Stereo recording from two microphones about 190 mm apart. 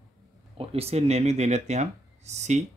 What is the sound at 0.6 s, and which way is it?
Speech, 30° right (ahead or behind).